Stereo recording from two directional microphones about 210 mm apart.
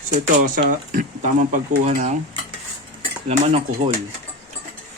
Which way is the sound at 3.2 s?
25° right (ahead or behind).